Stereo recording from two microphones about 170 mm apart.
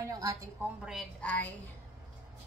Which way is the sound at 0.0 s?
20° right (ahead or behind).